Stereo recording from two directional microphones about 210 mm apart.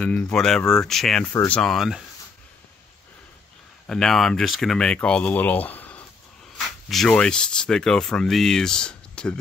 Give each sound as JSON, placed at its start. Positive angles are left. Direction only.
{"t": 0.0, "sound": "speech", "side_deg": 5}
{"t": 3.8, "sound": "speech", "side_deg": 0}